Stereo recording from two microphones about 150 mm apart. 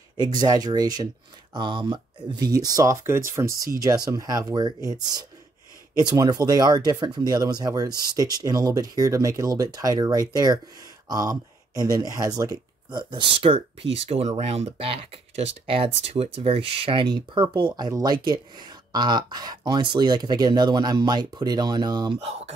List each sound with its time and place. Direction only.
0.2 s speech: 30° right (ahead or behind)